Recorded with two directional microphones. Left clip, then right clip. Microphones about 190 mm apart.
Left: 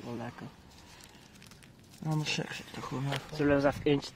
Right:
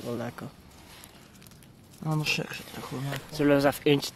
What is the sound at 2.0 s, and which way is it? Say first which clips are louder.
Speech: right 5 dB; centre (ahead or behind).